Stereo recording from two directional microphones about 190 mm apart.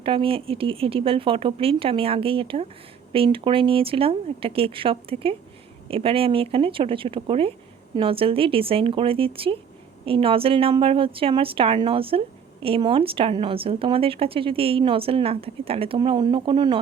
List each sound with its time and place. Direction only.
0.0 s a woman's voice: 30° right (ahead or behind)